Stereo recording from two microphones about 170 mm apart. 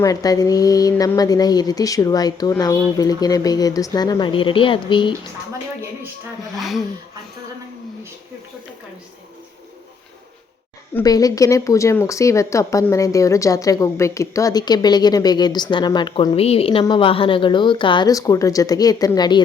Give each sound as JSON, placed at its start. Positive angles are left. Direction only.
{"t": 0.0, "sound": "speech", "side_deg": 20}
{"t": 6.6, "sound": "speech", "side_deg": 0}
{"t": 11.0, "sound": "speech", "side_deg": 20}